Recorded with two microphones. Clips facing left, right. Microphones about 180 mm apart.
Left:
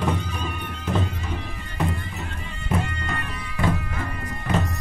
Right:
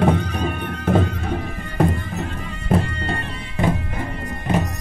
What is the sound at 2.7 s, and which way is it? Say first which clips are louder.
Music: right 6 dB; 30° right (ahead or behind).